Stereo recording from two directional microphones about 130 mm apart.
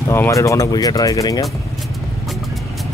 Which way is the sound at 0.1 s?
20° left (ahead or behind).